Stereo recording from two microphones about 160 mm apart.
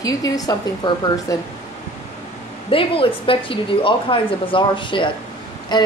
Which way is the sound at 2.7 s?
35° left (ahead or behind).